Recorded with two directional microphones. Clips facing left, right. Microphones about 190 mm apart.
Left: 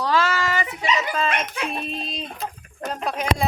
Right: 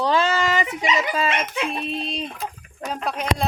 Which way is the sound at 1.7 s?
Centre (ahead or behind).